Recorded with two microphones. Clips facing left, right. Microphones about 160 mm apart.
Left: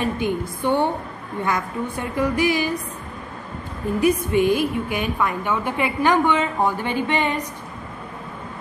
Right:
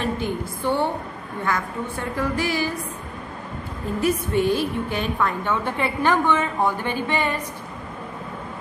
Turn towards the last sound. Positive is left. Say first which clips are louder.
# left 2 dB
turn(degrees=15)  # may be behind; listen again after turning